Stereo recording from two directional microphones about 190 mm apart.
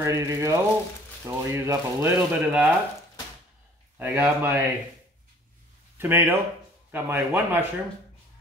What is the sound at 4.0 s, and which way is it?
Speech, 10° right (ahead or behind).